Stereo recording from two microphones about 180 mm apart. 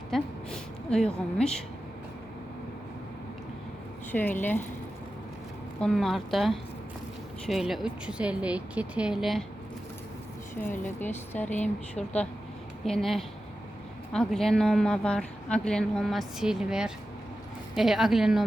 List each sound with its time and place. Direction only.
0.1 s a woman's voice: 5° left (ahead or behind)
4.1 s speech: 10° left (ahead or behind)
5.8 s a woman's voice: centre (ahead or behind)
10.5 s a woman's voice: 10° left (ahead or behind)
11.4 s speech: 40° left (ahead or behind)
12.8 s a woman's voice: centre (ahead or behind)